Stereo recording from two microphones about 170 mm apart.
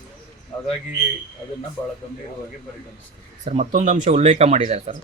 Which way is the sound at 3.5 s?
45° right (ahead or behind).